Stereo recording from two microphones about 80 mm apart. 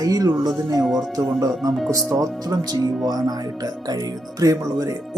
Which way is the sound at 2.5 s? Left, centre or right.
Right.